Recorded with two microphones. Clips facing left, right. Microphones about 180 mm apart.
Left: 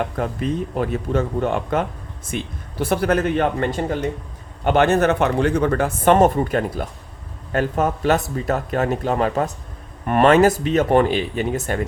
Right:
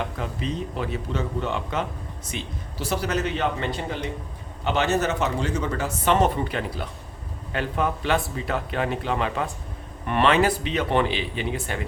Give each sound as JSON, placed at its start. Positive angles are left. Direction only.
{"t": 0.0, "sound": "speech", "side_deg": 50}